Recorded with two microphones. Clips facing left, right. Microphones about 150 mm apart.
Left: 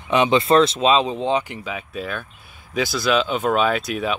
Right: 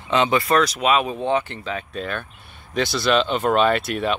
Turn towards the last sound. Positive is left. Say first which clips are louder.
# right 1 dB
turn(degrees=0)  # may be behind; listen again after turning